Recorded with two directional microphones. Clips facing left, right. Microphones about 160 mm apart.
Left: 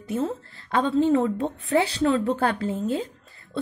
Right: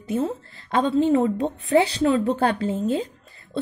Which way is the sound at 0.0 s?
20° right (ahead or behind).